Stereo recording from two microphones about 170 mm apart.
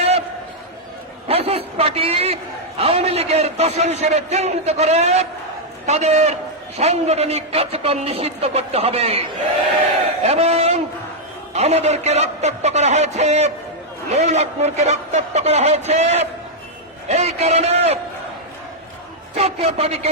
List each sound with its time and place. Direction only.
1.3 s a man's voice: 35° right (ahead or behind)
10.1 s a sound: 35° right (ahead or behind)
11.5 s a man's voice: 40° right (ahead or behind)
19.4 s a man's voice: 35° right (ahead or behind)